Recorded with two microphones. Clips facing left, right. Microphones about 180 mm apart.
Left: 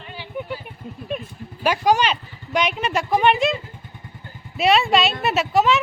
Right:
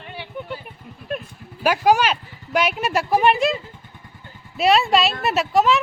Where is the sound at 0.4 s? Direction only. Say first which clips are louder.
Left 4 dB; 10° left (ahead or behind).